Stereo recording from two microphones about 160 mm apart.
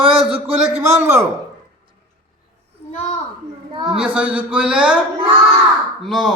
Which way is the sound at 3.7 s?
30° right (ahead or behind).